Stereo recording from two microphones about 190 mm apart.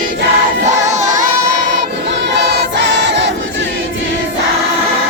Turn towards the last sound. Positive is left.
turn(degrees=-65)  # may be behind; listen again after turning